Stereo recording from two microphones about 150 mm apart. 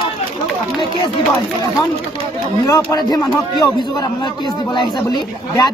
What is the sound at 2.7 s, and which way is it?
Speech, 25° left (ahead or behind).